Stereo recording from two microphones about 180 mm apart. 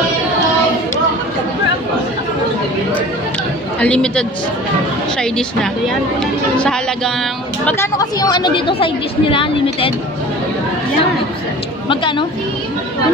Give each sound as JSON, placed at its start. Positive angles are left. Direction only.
{"t": 3.8, "sound": "a man's voice", "side_deg": 5}
{"t": 7.6, "sound": "a woman's voice", "side_deg": 15}
{"t": 11.9, "sound": "a woman's voice", "side_deg": 30}